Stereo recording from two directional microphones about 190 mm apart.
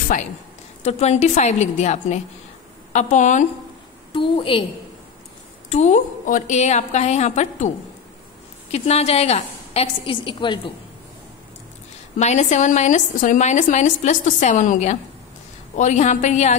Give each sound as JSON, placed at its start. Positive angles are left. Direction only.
{"t": 0.8, "sound": "a woman's voice", "side_deg": 35}
{"t": 4.1, "sound": "a woman's voice", "side_deg": 25}
{"t": 5.7, "sound": "a woman's voice", "side_deg": 35}
{"t": 8.7, "sound": "a woman's voice", "side_deg": 35}
{"t": 12.2, "sound": "a woman's voice", "side_deg": 40}